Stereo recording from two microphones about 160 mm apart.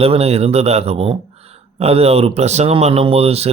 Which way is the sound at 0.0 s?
40° right (ahead or behind).